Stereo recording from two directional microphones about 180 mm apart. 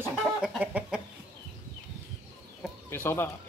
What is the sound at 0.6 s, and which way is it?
Chicken, 10° right (ahead or behind).